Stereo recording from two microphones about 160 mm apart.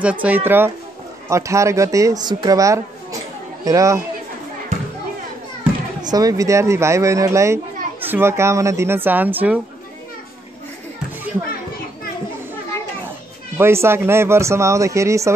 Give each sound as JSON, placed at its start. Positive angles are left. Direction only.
{"t": 0.0, "sound": "a child's voice", "side_deg": -10}
{"t": 6.0, "sound": "a child's voice", "side_deg": -25}
{"t": 13.6, "sound": "a child's voice", "side_deg": -15}